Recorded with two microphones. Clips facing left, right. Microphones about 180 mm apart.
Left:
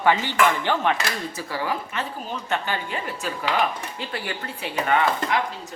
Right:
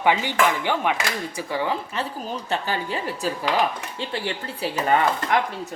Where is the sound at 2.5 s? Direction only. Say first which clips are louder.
Right 1 dB; 35° right (ahead or behind).